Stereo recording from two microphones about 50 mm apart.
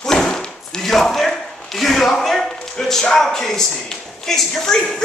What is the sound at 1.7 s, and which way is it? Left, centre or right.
Speech, centre.